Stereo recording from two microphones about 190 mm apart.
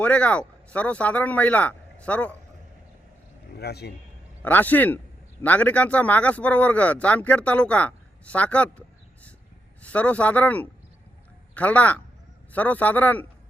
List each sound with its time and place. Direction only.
0.0 s speech: 5° left (ahead or behind)
3.5 s a man's voice: 60° left (ahead or behind)
4.4 s speech: 10° left (ahead or behind)
9.8 s speech: 5° left (ahead or behind)